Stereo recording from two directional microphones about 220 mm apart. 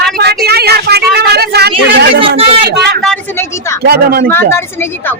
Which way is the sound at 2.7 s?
50° right (ahead or behind).